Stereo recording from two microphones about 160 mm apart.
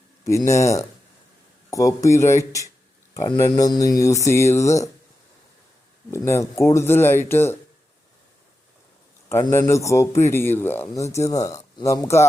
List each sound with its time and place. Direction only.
0.3 s speech: 20° left (ahead or behind)
6.1 s speech: 15° left (ahead or behind)
9.5 s speech: 20° left (ahead or behind)